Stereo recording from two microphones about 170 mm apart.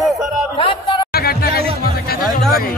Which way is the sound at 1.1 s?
65° left (ahead or behind).